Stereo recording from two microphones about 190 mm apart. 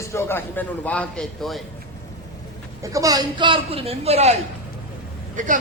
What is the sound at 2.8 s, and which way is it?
A man's voice, 15° right (ahead or behind).